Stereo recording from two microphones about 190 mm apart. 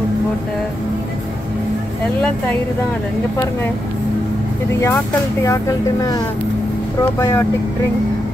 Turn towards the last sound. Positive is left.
turn(degrees=15)  # may be behind; listen again after turning